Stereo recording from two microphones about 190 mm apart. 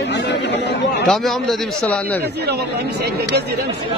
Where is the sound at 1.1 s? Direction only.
Centre (ahead or behind).